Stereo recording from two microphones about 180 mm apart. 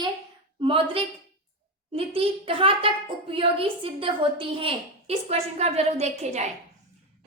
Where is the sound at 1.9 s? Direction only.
30° right (ahead or behind).